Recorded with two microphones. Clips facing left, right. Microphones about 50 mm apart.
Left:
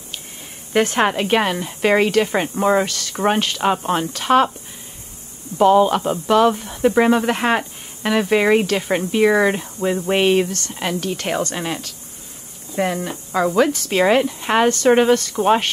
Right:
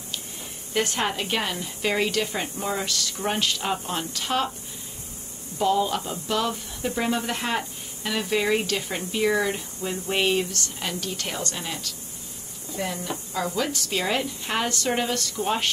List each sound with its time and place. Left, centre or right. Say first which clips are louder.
0.9 s speech: left 9 dB; left
5.6 s speech: left 9 dB; left